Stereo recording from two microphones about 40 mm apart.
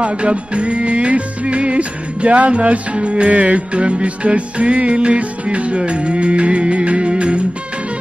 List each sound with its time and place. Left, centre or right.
0.0 s music: right